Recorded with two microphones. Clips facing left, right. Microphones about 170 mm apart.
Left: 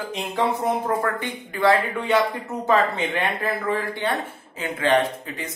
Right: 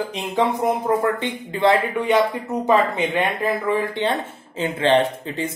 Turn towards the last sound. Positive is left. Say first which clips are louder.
# right 4 dB
turn(degrees=-30)  # may be behind; listen again after turning